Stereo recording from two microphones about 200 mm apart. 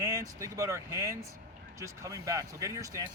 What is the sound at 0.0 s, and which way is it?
Speech, 15° right (ahead or behind).